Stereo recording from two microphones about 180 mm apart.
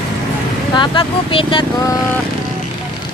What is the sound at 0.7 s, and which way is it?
Speech, 30° left (ahead or behind).